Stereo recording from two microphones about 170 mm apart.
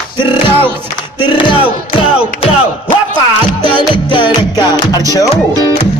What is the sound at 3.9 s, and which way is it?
Music, 30° left (ahead or behind).